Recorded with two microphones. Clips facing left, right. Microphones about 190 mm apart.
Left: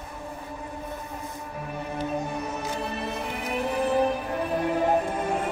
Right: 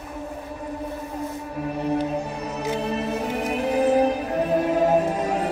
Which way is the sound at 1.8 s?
35° right (ahead or behind).